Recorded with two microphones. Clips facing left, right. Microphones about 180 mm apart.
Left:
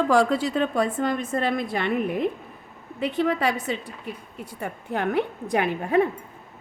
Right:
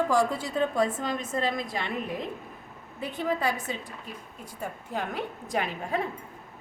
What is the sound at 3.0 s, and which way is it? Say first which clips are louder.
A woman's voice: left 6 dB; 75° left (ahead or behind).